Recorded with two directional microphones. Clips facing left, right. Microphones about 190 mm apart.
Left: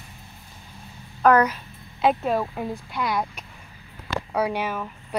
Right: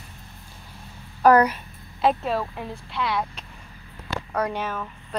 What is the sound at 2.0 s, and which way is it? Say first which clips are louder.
Speech: left 1 dB; 10° left (ahead or behind).